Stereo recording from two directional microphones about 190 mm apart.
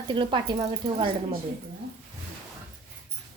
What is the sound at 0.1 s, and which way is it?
Speech, 25° right (ahead or behind).